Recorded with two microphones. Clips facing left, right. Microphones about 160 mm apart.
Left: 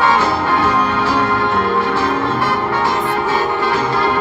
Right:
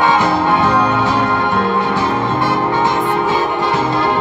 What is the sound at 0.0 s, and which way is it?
Music, 20° right (ahead or behind).